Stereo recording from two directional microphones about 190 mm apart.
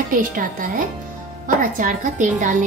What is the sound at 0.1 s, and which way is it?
A woman's voice, 45° right (ahead or behind).